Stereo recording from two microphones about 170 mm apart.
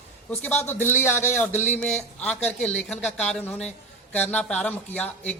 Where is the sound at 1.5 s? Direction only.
45° left (ahead or behind).